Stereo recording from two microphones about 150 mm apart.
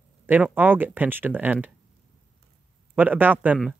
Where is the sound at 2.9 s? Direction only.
10° right (ahead or behind).